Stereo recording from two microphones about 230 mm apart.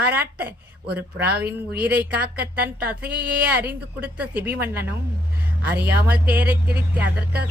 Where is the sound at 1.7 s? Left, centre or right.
Centre.